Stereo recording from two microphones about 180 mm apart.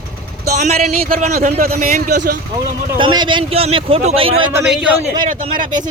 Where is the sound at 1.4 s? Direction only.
55° right (ahead or behind).